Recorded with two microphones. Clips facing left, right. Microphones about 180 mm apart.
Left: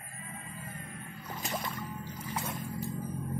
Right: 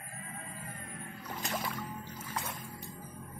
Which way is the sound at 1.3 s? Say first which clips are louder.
Even; centre (ahead or behind).